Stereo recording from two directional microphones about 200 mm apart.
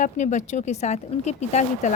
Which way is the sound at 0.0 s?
35° left (ahead or behind).